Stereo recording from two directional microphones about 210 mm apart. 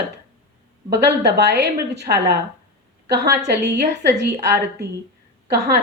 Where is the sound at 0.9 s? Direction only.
50° right (ahead or behind).